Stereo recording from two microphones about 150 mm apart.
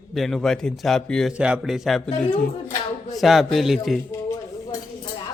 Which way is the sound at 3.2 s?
Centre (ahead or behind).